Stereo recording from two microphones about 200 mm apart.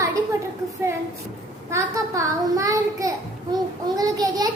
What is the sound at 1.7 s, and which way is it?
A child's voice, 15° right (ahead or behind).